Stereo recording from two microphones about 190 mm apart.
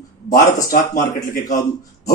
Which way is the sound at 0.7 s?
45° left (ahead or behind).